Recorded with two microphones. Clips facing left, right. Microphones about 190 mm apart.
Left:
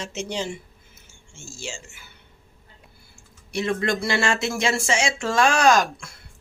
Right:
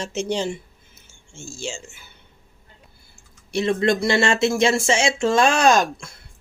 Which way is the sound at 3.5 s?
25° right (ahead or behind).